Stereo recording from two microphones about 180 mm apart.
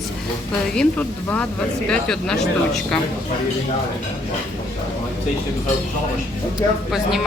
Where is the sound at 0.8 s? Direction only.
5° left (ahead or behind).